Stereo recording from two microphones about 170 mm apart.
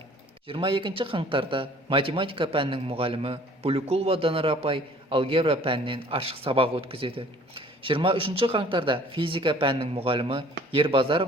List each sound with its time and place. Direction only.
0.4 s a man's voice: 30° right (ahead or behind)